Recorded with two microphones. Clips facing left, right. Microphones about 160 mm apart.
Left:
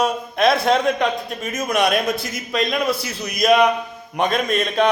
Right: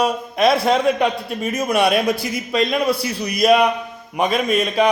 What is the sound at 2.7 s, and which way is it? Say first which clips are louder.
Speech: right 2 dB; 30° right (ahead or behind).